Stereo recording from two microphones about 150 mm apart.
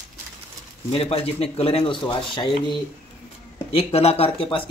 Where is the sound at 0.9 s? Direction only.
40° left (ahead or behind).